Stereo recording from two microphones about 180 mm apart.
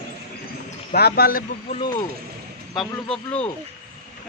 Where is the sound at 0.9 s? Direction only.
60° left (ahead or behind).